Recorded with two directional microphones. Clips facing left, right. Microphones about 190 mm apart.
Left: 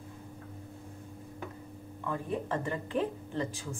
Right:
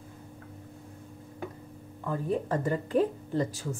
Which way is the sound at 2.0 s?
40° right (ahead or behind).